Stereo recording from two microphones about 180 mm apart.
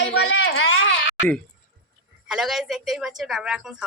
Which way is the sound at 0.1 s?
70° left (ahead or behind).